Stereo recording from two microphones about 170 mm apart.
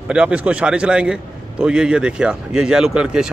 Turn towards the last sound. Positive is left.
turn(degrees=-5)  # may be behind; listen again after turning